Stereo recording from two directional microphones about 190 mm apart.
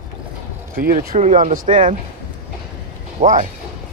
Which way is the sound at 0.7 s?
50° right (ahead or behind).